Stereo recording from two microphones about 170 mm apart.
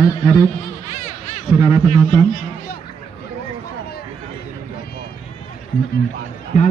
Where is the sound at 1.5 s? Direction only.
30° left (ahead or behind).